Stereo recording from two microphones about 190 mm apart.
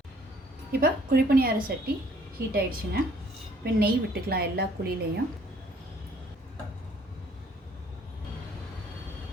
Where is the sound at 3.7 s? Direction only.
55° right (ahead or behind).